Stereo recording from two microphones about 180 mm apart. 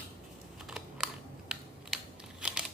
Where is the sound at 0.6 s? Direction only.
Centre (ahead or behind).